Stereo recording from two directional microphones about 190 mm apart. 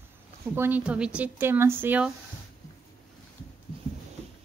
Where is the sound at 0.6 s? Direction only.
10° right (ahead or behind).